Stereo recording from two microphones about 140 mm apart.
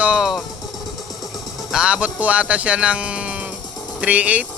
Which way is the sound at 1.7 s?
10° right (ahead or behind).